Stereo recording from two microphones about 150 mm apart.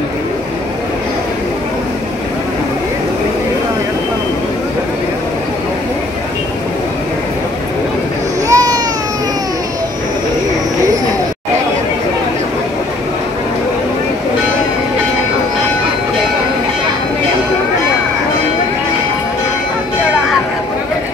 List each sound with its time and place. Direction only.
8.5 s baby cry: 25° right (ahead or behind)